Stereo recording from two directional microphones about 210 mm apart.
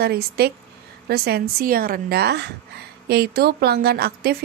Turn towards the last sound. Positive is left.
turn(degrees=-50)  # may be behind; listen again after turning